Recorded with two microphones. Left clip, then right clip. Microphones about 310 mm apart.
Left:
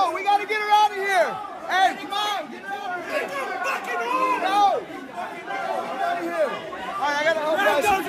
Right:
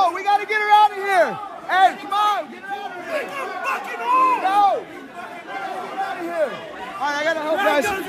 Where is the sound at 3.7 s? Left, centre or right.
Centre.